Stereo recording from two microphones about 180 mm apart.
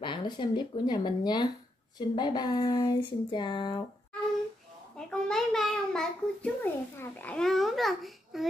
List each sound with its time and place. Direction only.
0.0 s speech: 25° left (ahead or behind)
4.9 s a child's voice: 5° left (ahead or behind)